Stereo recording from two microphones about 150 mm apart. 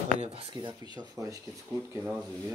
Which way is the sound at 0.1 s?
45° right (ahead or behind).